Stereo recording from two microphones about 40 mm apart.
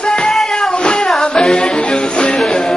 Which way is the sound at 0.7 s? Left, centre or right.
Left.